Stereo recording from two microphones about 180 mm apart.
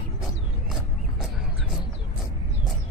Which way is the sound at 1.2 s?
Centre (ahead or behind).